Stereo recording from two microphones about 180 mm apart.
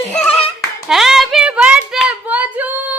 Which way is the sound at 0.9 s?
Centre (ahead or behind).